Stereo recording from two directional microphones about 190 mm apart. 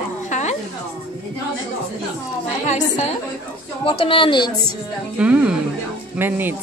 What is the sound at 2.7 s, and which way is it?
Speech, 35° left (ahead or behind).